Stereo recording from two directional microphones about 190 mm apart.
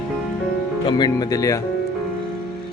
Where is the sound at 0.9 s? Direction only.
20° left (ahead or behind).